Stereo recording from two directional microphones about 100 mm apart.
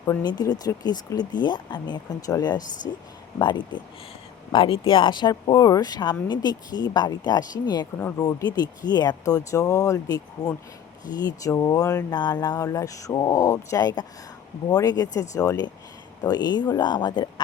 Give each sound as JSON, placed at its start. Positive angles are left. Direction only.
{"t": 0.2, "sound": "speech", "side_deg": 40}
{"t": 4.5, "sound": "speech", "side_deg": 60}
{"t": 7.9, "sound": "speech", "side_deg": 25}